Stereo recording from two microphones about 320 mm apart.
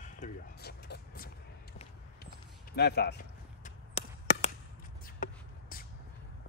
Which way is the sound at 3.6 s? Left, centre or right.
Left.